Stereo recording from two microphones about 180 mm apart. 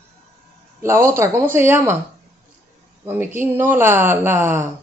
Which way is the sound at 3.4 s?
15° right (ahead or behind).